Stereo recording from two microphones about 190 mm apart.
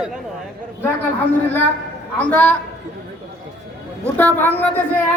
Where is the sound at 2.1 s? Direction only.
10° left (ahead or behind).